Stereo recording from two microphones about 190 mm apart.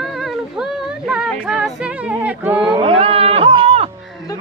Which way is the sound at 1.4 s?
Centre (ahead or behind).